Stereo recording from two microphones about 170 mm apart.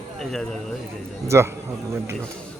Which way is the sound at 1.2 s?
15° right (ahead or behind).